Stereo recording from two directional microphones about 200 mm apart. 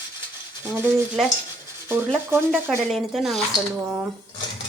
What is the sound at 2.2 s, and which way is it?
Speech, 10° right (ahead or behind).